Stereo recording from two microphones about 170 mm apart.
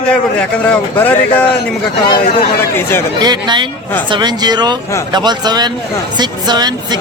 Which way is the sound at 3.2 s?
25° right (ahead or behind).